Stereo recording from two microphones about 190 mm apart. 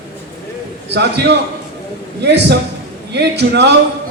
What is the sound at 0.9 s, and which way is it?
A man's voice, 60° right (ahead or behind).